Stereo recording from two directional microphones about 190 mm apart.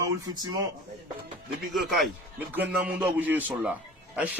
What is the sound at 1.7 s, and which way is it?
A man's voice, centre (ahead or behind).